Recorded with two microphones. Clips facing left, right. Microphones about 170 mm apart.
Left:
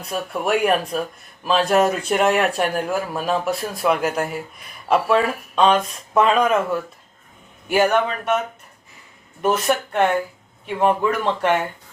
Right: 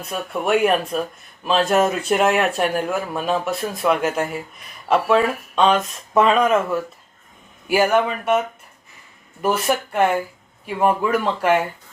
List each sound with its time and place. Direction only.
0.1 s speech: centre (ahead or behind)
9.4 s speech: 5° right (ahead or behind)